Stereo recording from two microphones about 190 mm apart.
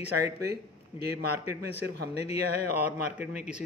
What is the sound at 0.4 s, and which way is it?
Speech, 55° right (ahead or behind).